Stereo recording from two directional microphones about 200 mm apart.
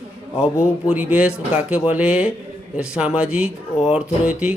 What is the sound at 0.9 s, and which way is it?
Speech, 5° right (ahead or behind).